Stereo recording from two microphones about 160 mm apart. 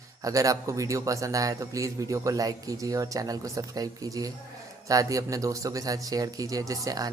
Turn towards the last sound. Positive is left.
turn(degrees=-20)  # may be behind; listen again after turning